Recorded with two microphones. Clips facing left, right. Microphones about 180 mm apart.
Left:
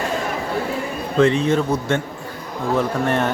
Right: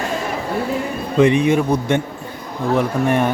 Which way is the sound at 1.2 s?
15° right (ahead or behind).